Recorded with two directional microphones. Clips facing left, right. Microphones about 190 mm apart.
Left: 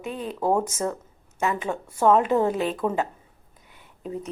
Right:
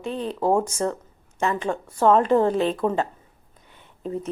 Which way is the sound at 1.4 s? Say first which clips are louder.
Right 2 dB; 5° left (ahead or behind).